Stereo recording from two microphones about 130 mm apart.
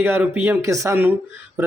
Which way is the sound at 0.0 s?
15° right (ahead or behind).